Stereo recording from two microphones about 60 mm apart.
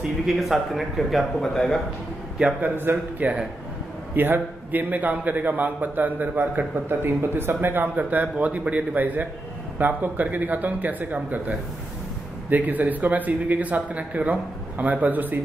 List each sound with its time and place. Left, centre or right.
0.3 s a man's voice: centre
2.6 s a man's voice: right
6.9 s a man's voice: right